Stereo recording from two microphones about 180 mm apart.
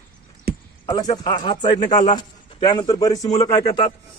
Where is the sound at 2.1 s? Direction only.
25° left (ahead or behind).